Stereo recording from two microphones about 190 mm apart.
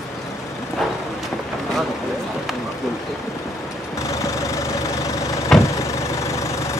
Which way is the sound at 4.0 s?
15° left (ahead or behind).